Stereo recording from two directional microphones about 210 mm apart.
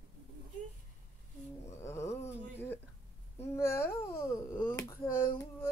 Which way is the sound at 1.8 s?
10° left (ahead or behind).